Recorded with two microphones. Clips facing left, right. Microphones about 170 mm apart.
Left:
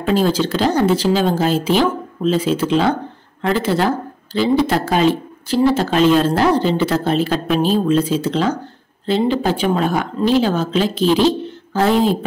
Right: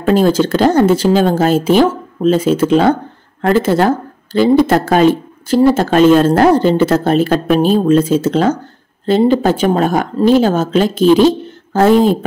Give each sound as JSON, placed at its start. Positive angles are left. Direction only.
{"t": 0.0, "sound": "speech", "side_deg": -50}